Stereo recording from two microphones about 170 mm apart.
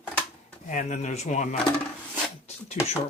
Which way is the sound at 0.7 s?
45° left (ahead or behind).